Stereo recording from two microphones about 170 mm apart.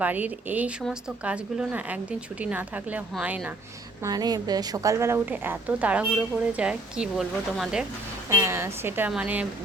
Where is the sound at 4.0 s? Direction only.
25° right (ahead or behind); by 7.8 s 5° right (ahead or behind).